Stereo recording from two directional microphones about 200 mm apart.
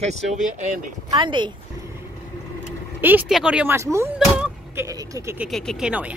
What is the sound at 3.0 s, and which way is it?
Speech, 5° right (ahead or behind).